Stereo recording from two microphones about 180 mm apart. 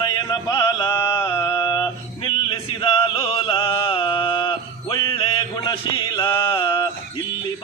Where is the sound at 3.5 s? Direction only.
30° left (ahead or behind).